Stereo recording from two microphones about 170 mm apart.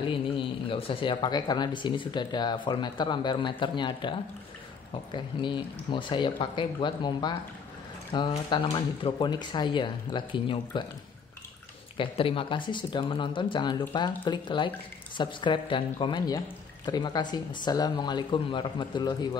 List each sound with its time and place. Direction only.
0.0 s speech: 30° left (ahead or behind)
5.1 s speech: 30° left (ahead or behind)
12.0 s speech: 30° left (ahead or behind)